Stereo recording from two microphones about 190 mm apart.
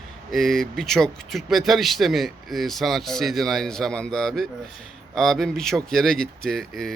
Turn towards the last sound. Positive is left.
turn(degrees=0)  # may be behind; listen again after turning